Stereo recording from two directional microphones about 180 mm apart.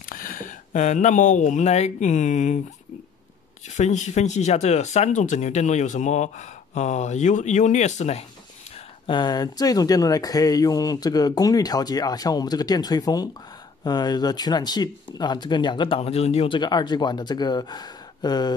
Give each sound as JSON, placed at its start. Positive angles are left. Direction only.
{"t": 0.1, "sound": "speech", "side_deg": 50}
{"t": 3.6, "sound": "speech", "side_deg": 40}
{"t": 8.7, "sound": "speech", "side_deg": 30}